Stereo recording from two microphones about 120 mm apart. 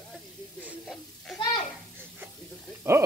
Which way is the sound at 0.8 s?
5° left (ahead or behind).